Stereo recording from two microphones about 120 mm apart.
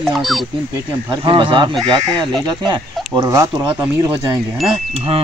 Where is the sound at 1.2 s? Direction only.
45° right (ahead or behind).